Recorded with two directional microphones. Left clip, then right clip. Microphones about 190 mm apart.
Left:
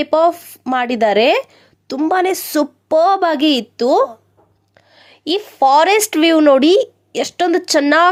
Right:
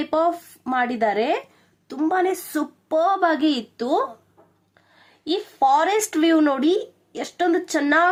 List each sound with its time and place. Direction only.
0.0 s a woman's voice: 30° left (ahead or behind)